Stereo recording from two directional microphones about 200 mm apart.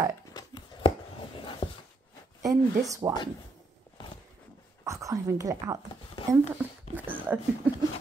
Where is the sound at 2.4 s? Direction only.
15° right (ahead or behind).